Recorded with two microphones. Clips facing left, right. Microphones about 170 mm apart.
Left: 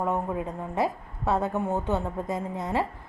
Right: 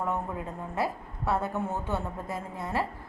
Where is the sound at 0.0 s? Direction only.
20° left (ahead or behind).